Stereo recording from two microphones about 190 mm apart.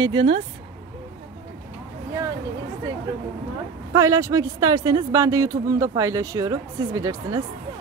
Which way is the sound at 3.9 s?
15° right (ahead or behind).